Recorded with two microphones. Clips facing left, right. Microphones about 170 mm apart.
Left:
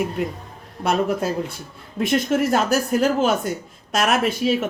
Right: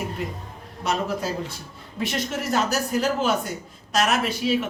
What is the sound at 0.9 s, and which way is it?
Speech, 55° left (ahead or behind).